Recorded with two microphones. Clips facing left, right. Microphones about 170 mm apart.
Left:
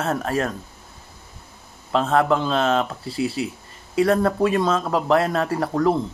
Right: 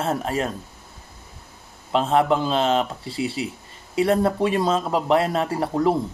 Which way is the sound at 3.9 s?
30° right (ahead or behind).